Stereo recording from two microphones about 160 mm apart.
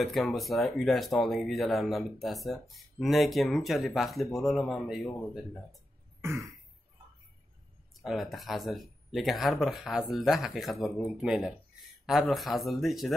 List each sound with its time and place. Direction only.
0.0 s speech: centre (ahead or behind)
6.2 s throat clearing: 20° right (ahead or behind)
7.9 s speech: centre (ahead or behind)